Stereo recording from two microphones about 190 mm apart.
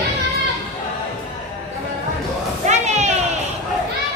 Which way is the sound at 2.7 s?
35° right (ahead or behind).